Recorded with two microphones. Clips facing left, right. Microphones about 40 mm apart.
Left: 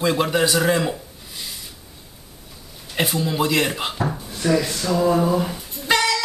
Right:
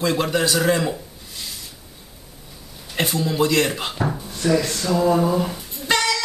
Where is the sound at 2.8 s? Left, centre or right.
Centre.